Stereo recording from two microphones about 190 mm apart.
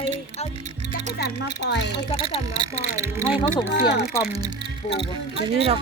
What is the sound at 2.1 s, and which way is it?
Speech, 30° left (ahead or behind).